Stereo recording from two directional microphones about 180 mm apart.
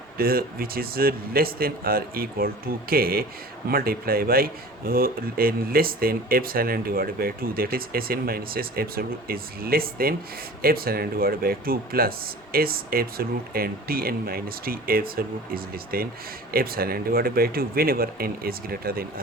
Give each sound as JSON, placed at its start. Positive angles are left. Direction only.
{"t": 0.2, "sound": "speech", "side_deg": -55}